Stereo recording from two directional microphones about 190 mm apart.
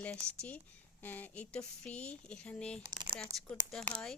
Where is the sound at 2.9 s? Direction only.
25° right (ahead or behind).